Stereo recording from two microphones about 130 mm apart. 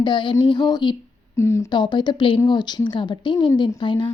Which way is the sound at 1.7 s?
35° left (ahead or behind).